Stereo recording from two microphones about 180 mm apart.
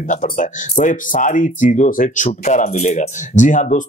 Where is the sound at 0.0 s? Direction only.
45° left (ahead or behind).